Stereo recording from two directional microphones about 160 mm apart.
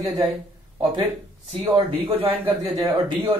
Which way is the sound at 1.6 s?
35° right (ahead or behind).